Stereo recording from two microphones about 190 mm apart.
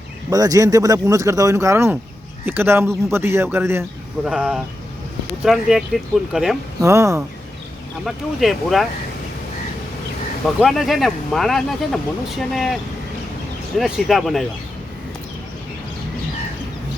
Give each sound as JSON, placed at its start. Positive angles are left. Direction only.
{"t": 0.3, "sound": "speech", "side_deg": -20}
{"t": 6.8, "sound": "speech", "side_deg": -15}
{"t": 8.0, "sound": "speech", "side_deg": 0}
{"t": 10.6, "sound": "speech", "side_deg": 0}